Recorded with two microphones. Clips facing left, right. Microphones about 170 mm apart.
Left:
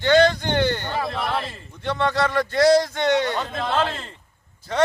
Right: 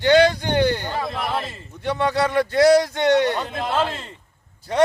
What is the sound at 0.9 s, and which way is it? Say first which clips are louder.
Speech: even; centre (ahead or behind).